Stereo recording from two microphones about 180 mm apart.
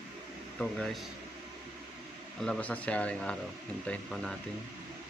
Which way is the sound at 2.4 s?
5° left (ahead or behind).